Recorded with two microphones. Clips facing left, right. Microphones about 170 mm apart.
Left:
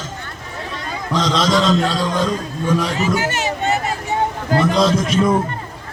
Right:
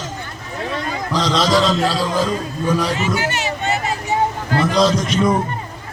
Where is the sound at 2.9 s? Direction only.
40° left (ahead or behind).